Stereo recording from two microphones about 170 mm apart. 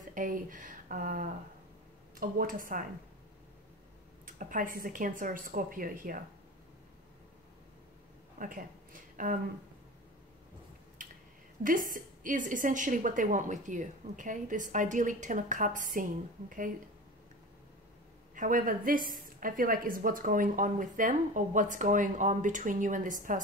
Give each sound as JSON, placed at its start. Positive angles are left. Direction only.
{"t": 0.1, "sound": "a woman's voice", "side_deg": -50}
{"t": 4.4, "sound": "a woman's voice", "side_deg": -50}
{"t": 8.4, "sound": "a woman's voice", "side_deg": -50}
{"t": 11.6, "sound": "a woman's voice", "side_deg": -50}
{"t": 18.3, "sound": "a woman's voice", "side_deg": -50}